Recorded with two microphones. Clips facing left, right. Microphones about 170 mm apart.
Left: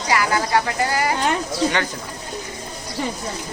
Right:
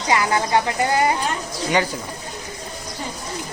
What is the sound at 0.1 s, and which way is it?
A woman's voice, 20° right (ahead or behind).